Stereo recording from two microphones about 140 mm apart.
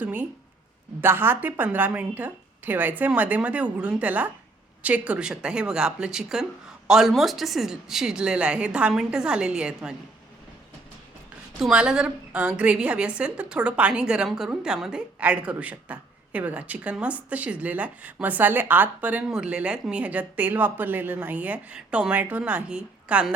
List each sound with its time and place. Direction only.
0.0 s a woman's voice: 10° right (ahead or behind)
11.6 s a woman's voice: 5° right (ahead or behind)